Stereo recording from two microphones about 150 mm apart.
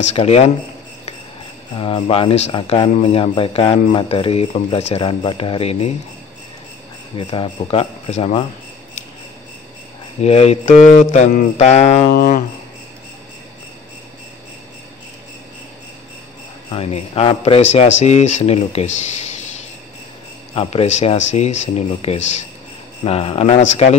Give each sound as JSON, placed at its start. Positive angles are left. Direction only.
{"t": 0.1, "sound": "speech", "side_deg": 45}
{"t": 1.8, "sound": "speech", "side_deg": 35}
{"t": 7.2, "sound": "speech", "side_deg": 35}
{"t": 10.2, "sound": "speech", "side_deg": 45}
{"t": 12.1, "sound": "a sound", "side_deg": 80}
{"t": 16.7, "sound": "speech", "side_deg": 40}
{"t": 20.5, "sound": "speech", "side_deg": 45}